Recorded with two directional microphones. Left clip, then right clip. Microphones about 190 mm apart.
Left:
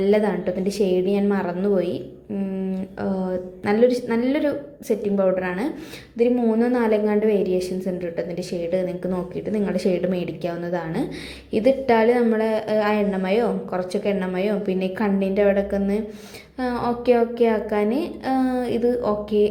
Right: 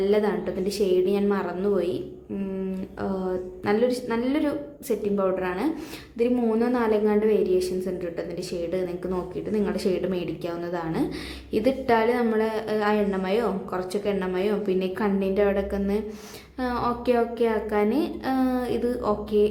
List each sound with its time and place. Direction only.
0.0 s a woman's voice: 15° left (ahead or behind)
3.0 s a woman's voice: 10° left (ahead or behind)